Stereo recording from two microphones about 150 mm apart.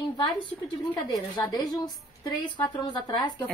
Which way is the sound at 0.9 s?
25° left (ahead or behind).